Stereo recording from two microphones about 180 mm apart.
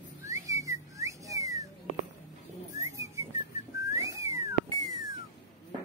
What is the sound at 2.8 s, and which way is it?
Whistling, 15° right (ahead or behind).